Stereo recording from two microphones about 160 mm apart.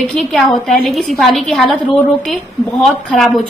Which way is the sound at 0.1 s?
Centre (ahead or behind).